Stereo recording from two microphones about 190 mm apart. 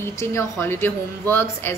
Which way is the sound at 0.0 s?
15° left (ahead or behind).